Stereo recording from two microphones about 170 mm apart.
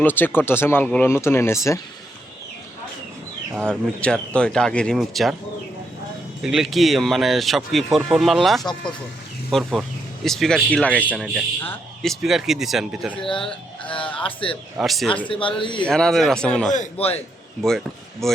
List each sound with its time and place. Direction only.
0.0 s speech: 10° left (ahead or behind)
3.5 s speech: 5° left (ahead or behind)
6.4 s speech: centre (ahead or behind)
11.1 s speech: 5° right (ahead or behind)
11.6 s speech: 10° left (ahead or behind)
12.2 s speech: centre (ahead or behind)
13.5 s a sound: 30° left (ahead or behind)
14.2 s speech: 30° left (ahead or behind)
14.8 s speech: centre (ahead or behind)
15.3 s speech: 30° left (ahead or behind)
15.8 s speech: 5° left (ahead or behind)
16.7 s a man's voice: 40° left (ahead or behind)
17.6 s speech: centre (ahead or behind)